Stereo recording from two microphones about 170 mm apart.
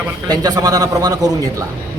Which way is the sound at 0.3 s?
20° right (ahead or behind).